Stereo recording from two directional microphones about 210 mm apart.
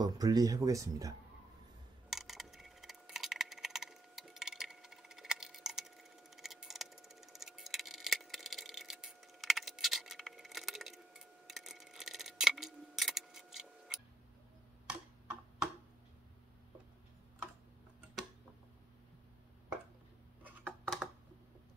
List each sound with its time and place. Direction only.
0.0 s speech: 20° right (ahead or behind)
2.0 s a sound: centre (ahead or behind)
14.9 s tick-tock: 10° right (ahead or behind)
20.8 s computer keyboard: centre (ahead or behind)